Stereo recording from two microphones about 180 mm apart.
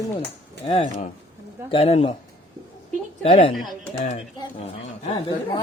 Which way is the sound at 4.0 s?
40° left (ahead or behind).